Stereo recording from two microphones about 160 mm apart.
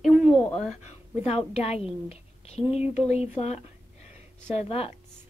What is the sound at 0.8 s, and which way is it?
A woman's voice, 40° left (ahead or behind).